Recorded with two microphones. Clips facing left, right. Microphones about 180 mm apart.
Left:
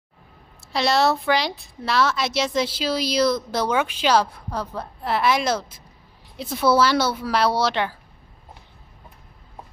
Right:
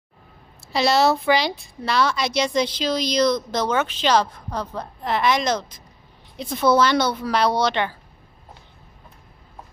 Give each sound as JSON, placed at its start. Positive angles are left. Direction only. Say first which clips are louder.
{"t": 0.7, "sound": "a woman's voice", "louder": "right 2 dB", "side_deg": 0}